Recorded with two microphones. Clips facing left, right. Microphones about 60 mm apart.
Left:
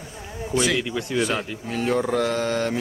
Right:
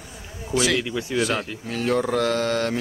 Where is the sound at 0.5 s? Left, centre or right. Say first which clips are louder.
Even; centre.